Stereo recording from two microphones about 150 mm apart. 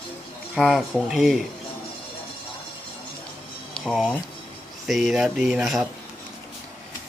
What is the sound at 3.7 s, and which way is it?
Speech, centre (ahead or behind).